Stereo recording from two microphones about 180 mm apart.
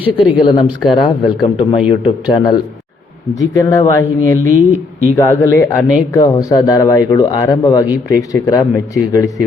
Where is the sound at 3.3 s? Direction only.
20° left (ahead or behind).